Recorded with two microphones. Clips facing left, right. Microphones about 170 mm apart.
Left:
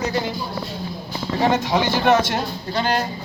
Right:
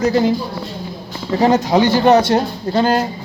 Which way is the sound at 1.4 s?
35° right (ahead or behind).